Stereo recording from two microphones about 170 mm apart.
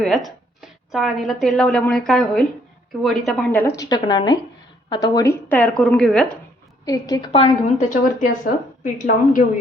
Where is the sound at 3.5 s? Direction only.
15° left (ahead or behind).